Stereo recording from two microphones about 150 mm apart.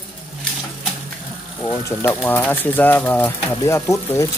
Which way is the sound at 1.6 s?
15° left (ahead or behind).